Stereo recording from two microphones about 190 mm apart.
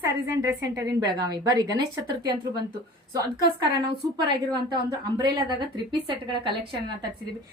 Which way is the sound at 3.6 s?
25° right (ahead or behind).